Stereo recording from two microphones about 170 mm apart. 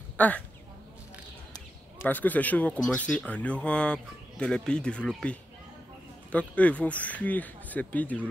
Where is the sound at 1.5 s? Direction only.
10° left (ahead or behind).